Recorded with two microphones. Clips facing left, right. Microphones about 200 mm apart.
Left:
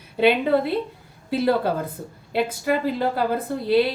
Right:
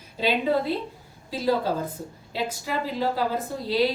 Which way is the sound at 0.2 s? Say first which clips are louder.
Left 5 dB; 60° left (ahead or behind).